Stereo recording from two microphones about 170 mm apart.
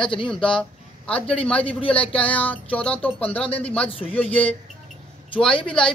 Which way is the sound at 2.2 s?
10° left (ahead or behind).